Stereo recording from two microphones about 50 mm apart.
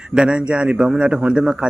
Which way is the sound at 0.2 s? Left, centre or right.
Centre.